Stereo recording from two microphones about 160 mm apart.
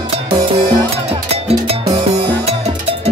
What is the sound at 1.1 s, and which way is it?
Music, 40° right (ahead or behind).